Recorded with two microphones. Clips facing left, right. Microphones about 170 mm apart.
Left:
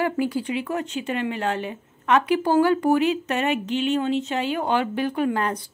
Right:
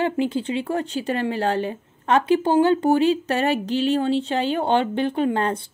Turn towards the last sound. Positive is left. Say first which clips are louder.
# right 2 dB
turn(degrees=-30)  # may be behind; listen again after turning